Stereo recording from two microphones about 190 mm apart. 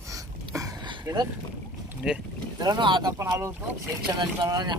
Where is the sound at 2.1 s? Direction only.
5° right (ahead or behind).